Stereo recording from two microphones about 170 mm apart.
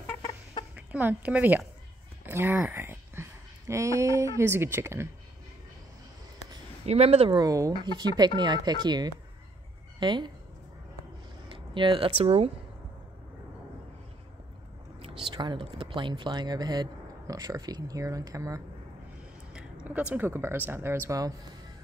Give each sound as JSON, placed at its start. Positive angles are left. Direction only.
{"t": 0.0, "sound": "chicken", "side_deg": 10}
{"t": 0.7, "sound": "speech", "side_deg": -10}
{"t": 2.6, "sound": "a sound", "side_deg": -10}
{"t": 4.4, "sound": "speech", "side_deg": -15}
{"t": 6.9, "sound": "speech", "side_deg": -35}
{"t": 7.3, "sound": "a woman's voice", "side_deg": -20}
{"t": 11.5, "sound": "speech", "side_deg": -30}
{"t": 15.3, "sound": "speech", "side_deg": -30}
{"t": 19.5, "sound": "speech", "side_deg": -5}